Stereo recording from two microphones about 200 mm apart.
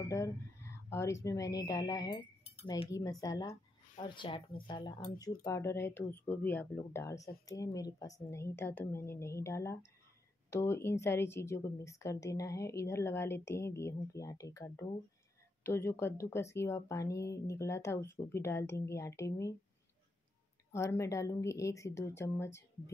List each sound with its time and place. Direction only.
0.8 s speech: 15° left (ahead or behind)
20.7 s speech: 15° left (ahead or behind)